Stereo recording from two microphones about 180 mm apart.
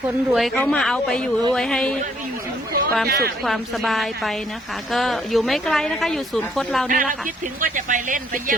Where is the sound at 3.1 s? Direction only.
60° right (ahead or behind).